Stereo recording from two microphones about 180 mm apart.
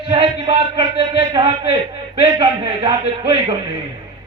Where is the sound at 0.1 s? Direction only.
25° right (ahead or behind).